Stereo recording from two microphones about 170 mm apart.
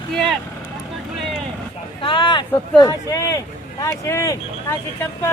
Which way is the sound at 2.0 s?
30° left (ahead or behind).